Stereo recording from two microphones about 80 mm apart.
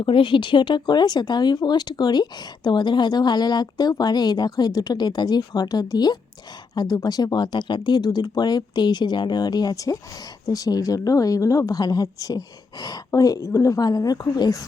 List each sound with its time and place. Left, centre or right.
0.0 s speech: left